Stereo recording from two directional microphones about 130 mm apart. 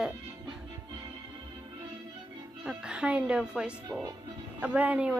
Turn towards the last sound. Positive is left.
turn(degrees=-10)  # may be behind; listen again after turning